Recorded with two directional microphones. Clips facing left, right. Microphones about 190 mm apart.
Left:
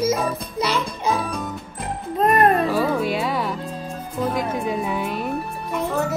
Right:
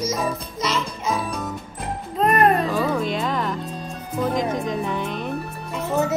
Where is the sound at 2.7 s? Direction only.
10° left (ahead or behind).